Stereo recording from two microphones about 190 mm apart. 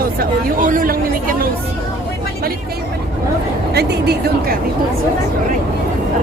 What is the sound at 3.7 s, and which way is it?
Speech, 60° right (ahead or behind).